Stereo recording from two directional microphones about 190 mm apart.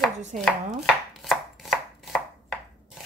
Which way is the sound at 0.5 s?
Centre (ahead or behind).